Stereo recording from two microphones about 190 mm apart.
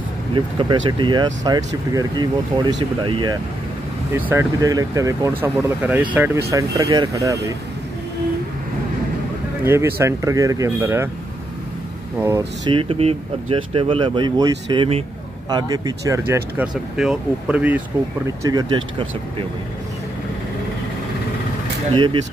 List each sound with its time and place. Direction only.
0.3 s speech: 25° right (ahead or behind)
9.7 s speech: 15° right (ahead or behind)
12.2 s speech: 15° right (ahead or behind)
12.7 s speech: 30° right (ahead or behind)
21.9 s speech: 25° right (ahead or behind)